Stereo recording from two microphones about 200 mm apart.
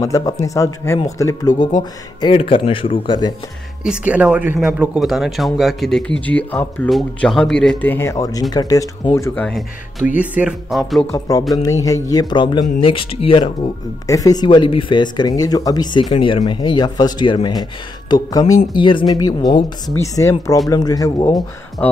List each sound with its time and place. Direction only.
0.0 s speech: 15° left (ahead or behind)
3.8 s speech: 5° right (ahead or behind)
11.1 s speech: 15° left (ahead or behind)
21.4 s speech: 5° left (ahead or behind)